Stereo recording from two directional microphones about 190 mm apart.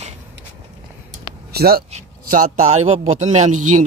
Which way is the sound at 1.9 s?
40° right (ahead or behind).